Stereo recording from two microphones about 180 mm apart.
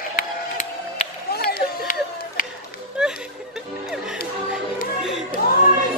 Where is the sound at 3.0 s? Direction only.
5° right (ahead or behind).